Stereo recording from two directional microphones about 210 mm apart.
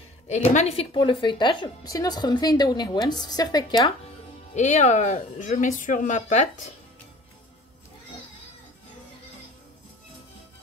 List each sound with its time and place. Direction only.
0.3 s a woman's voice: 35° left (ahead or behind)
4.6 s speech: 35° left (ahead or behind)